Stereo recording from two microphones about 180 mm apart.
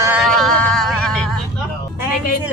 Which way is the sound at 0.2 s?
Centre (ahead or behind).